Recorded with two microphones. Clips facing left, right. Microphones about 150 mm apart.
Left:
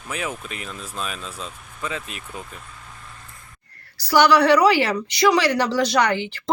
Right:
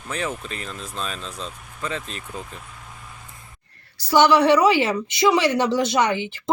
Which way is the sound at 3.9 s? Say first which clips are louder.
Even; 25° right (ahead or behind).